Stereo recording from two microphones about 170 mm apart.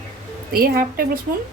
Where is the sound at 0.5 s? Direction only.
60° right (ahead or behind).